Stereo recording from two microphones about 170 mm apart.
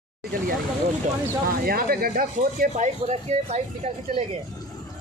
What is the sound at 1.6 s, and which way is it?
A man's voice, 60° right (ahead or behind).